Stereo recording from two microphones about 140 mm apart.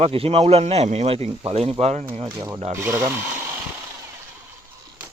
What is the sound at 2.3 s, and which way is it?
Speech, 20° right (ahead or behind).